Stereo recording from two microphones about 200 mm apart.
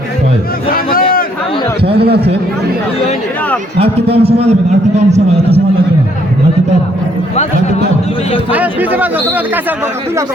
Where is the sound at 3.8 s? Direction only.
30° right (ahead or behind).